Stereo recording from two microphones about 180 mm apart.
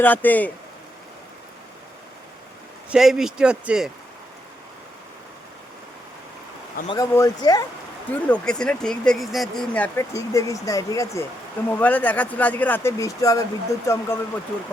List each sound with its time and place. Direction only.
0.0 s speech: 10° left (ahead or behind)
2.9 s speech: centre (ahead or behind)
6.8 s speech: 20° left (ahead or behind)
8.1 s speech: 5° left (ahead or behind)